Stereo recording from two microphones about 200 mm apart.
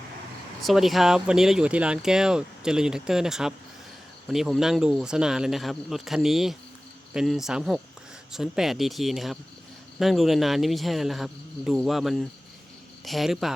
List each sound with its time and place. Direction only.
0.6 s speech: centre (ahead or behind)